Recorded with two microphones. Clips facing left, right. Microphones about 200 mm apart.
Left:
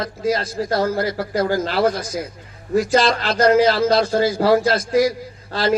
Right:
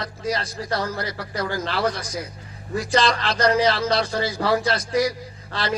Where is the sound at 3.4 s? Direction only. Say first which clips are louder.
Left 6 dB; 50° left (ahead or behind).